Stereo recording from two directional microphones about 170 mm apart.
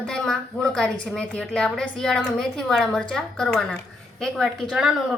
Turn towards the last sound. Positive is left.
turn(degrees=0)  # may be behind; listen again after turning